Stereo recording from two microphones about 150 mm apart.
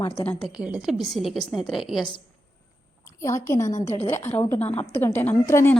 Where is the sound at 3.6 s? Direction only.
55° left (ahead or behind).